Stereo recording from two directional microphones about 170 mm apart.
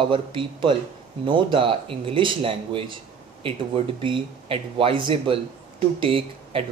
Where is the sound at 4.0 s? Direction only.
30° right (ahead or behind).